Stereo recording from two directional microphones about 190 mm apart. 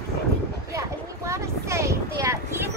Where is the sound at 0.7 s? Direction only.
15° right (ahead or behind).